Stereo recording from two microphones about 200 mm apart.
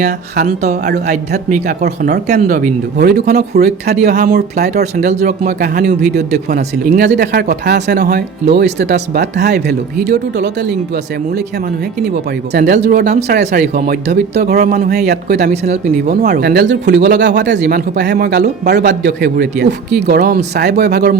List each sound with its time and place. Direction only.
1.5 s speech: 40° right (ahead or behind)
1.8 s speech: 55° right (ahead or behind)
2.2 s speech: 35° right (ahead or behind)
3.0 s speech: 55° right (ahead or behind)
12.8 s speech: 55° right (ahead or behind)